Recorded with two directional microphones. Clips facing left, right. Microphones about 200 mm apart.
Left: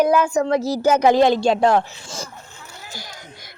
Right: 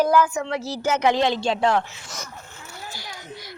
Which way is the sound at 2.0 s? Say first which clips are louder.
Left 5 dB; 30° left (ahead or behind).